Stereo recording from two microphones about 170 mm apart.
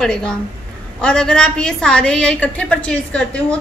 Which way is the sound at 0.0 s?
5° left (ahead or behind).